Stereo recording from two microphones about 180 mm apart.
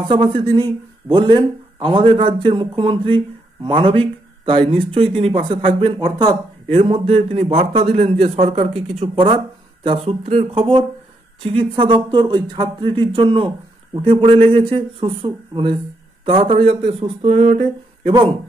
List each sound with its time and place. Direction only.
0.1 s speech: 25° right (ahead or behind)